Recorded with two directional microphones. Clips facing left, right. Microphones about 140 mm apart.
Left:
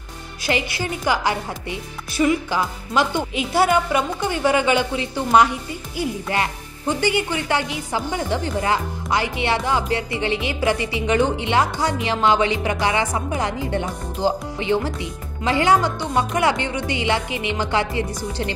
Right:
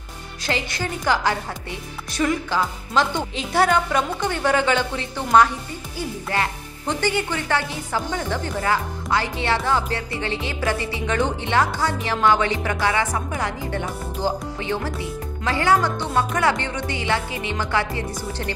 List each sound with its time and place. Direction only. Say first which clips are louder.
0.4 s a woman's voice: left 2 dB; 10° left (ahead or behind)